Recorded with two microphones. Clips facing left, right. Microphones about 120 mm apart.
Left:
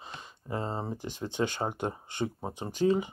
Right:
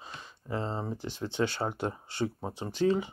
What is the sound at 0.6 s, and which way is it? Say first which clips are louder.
Speech: even; 15° left (ahead or behind).